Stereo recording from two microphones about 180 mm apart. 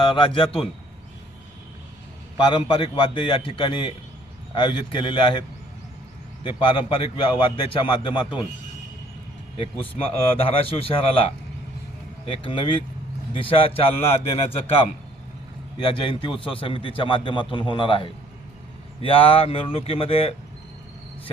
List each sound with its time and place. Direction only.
0.0 s a man's voice: 30° left (ahead or behind)
2.4 s a man's voice: 25° left (ahead or behind)
9.6 s a man's voice: 30° left (ahead or behind)
16.0 s a man's voice: 30° left (ahead or behind)